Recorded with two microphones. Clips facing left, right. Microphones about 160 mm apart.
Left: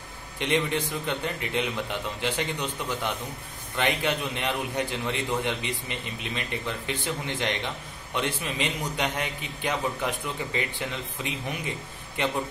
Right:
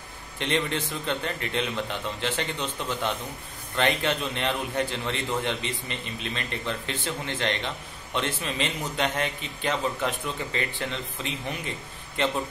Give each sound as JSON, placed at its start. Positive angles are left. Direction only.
{"t": 0.4, "sound": "a man's voice", "side_deg": 15}